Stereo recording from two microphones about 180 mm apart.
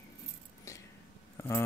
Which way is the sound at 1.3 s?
15° left (ahead or behind).